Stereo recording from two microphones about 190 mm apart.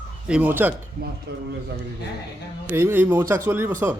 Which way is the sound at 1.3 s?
60° right (ahead or behind).